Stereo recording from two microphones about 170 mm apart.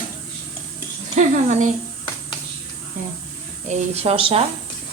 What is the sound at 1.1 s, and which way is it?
Speech, 45° right (ahead or behind).